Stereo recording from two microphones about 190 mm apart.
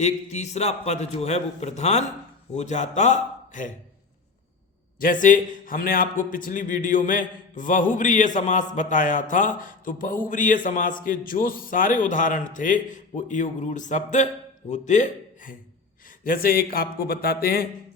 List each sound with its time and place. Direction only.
0.0 s a man's voice: 35° left (ahead or behind)
4.9 s a man's voice: 45° left (ahead or behind)